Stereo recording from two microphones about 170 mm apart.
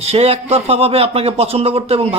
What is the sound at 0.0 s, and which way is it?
Speech, 35° right (ahead or behind).